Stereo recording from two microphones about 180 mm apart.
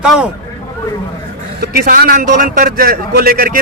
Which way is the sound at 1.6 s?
55° right (ahead or behind).